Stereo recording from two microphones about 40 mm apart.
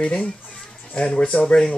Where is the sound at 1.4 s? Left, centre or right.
Centre.